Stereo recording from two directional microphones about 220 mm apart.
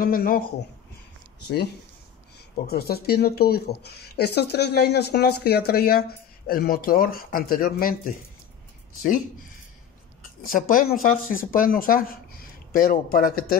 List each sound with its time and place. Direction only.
0.0 s speech: 40° left (ahead or behind)
2.6 s speech: 45° left (ahead or behind)
10.4 s speech: 40° left (ahead or behind)